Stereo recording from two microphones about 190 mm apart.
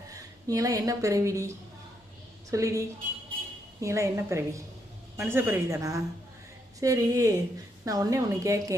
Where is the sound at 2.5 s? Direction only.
15° right (ahead or behind).